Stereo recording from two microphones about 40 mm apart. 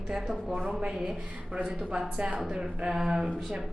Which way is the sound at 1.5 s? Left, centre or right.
Right.